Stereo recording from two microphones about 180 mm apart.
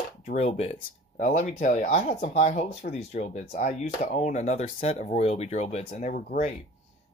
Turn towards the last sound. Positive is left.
turn(degrees=40)  # may be behind; listen again after turning